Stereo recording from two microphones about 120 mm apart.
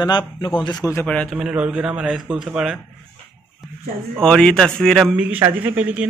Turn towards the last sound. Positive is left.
turn(degrees=-15)  # may be behind; listen again after turning